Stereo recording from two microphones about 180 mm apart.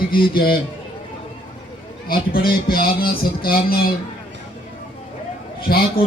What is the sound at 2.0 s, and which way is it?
Speech, 55° left (ahead or behind).